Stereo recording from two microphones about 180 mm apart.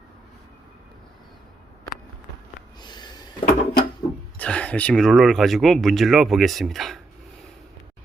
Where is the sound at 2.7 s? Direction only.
25° left (ahead or behind).